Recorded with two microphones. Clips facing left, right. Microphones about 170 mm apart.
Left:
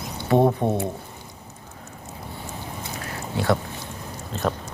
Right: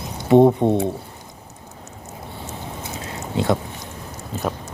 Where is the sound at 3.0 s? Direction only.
20° right (ahead or behind).